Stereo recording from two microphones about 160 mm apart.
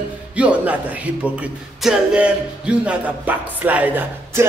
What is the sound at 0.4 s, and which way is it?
Music, 10° right (ahead or behind).